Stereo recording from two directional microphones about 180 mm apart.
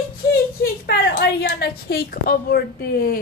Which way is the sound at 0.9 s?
70° left (ahead or behind).